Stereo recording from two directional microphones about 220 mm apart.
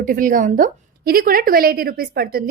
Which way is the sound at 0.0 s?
40° right (ahead or behind).